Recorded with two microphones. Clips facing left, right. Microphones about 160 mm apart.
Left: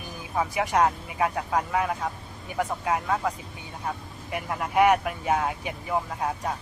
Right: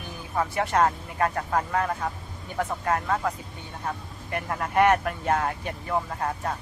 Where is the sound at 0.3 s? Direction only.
10° left (ahead or behind).